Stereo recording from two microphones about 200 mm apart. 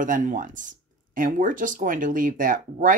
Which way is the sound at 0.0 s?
40° right (ahead or behind).